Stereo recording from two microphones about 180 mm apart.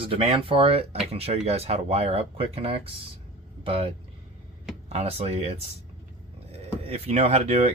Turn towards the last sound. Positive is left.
turn(degrees=-35)  # may be behind; listen again after turning